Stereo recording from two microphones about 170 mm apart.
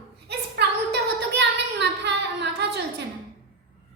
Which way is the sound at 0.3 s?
75° right (ahead or behind).